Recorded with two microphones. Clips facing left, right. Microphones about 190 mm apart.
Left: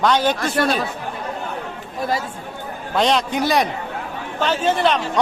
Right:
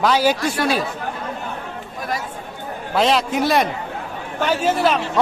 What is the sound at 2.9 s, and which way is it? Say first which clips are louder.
Speech: right 1 dB; 5° right (ahead or behind).